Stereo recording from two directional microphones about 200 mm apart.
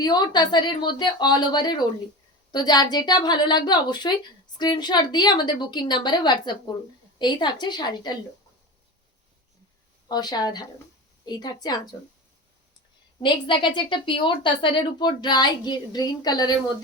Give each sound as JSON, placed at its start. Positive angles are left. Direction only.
{"t": 0.0, "sound": "a woman's voice", "side_deg": 20}
{"t": 10.1, "sound": "a woman's voice", "side_deg": 20}
{"t": 13.2, "sound": "a woman's voice", "side_deg": 25}